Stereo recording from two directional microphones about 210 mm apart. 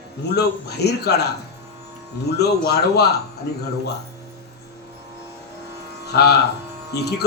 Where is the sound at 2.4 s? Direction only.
50° left (ahead or behind).